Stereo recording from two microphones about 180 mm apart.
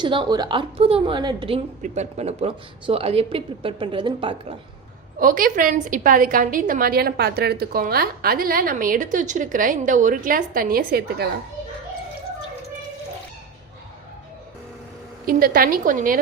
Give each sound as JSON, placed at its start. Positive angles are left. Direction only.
{"t": 0.0, "sound": "a woman's voice", "side_deg": -25}
{"t": 5.2, "sound": "a woman's voice", "side_deg": -50}
{"t": 15.3, "sound": "a woman's voice", "side_deg": -55}